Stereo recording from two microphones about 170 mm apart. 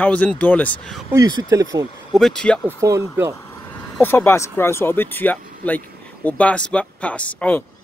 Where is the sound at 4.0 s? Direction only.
10° left (ahead or behind).